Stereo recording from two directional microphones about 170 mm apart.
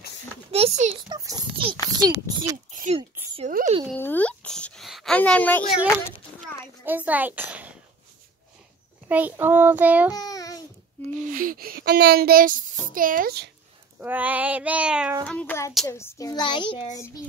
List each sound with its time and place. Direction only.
0.5 s a child's voice: 35° right (ahead or behind)
2.5 s oink: 50° right (ahead or behind)
3.4 s speech: 50° right (ahead or behind)
3.9 s a sound: 10° left (ahead or behind)
6.8 s a child's voice: 10° right (ahead or behind)
9.1 s child singing: 10° right (ahead or behind)
10.1 s babbling: 20° left (ahead or behind)
11.2 s speech: 55° right (ahead or behind)
13.9 s child singing: 10° right (ahead or behind)
15.2 s hands: 10° left (ahead or behind)
15.9 s a child's voice: 15° left (ahead or behind)